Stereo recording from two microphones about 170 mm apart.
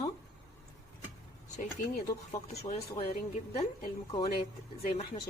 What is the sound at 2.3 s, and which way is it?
Speech, 40° left (ahead or behind).